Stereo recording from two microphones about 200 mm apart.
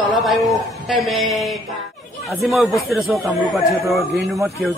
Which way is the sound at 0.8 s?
Centre (ahead or behind).